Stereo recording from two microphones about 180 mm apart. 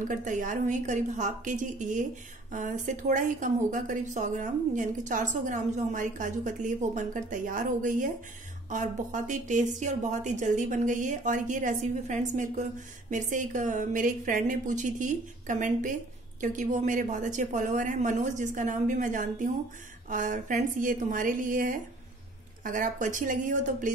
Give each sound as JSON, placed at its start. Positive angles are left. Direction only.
{"t": 0.1, "sound": "a woman's voice", "side_deg": -45}